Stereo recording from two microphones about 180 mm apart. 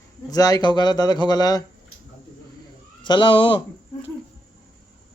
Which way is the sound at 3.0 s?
25° left (ahead or behind).